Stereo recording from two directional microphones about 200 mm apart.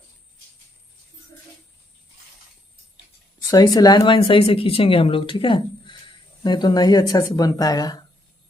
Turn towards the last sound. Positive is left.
turn(degrees=20)  # may be behind; listen again after turning